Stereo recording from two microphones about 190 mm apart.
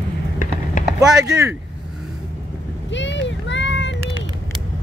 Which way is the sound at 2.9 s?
70° left (ahead or behind).